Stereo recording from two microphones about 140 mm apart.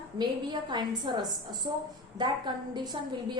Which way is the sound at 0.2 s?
30° right (ahead or behind).